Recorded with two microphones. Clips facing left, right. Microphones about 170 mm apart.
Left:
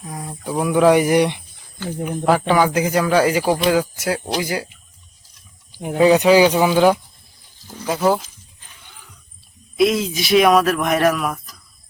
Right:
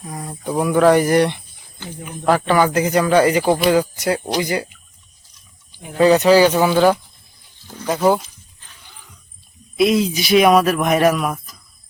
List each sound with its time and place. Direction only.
0.0 s speech: centre (ahead or behind)
2.0 s speech: 55° left (ahead or behind)
2.5 s speech: 10° left (ahead or behind)
6.0 s speech: 10° left (ahead or behind)
8.8 s a sound: 10° right (ahead or behind)
9.7 s speech: centre (ahead or behind)